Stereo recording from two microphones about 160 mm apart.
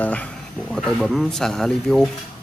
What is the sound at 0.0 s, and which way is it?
A man's voice, 10° left (ahead or behind).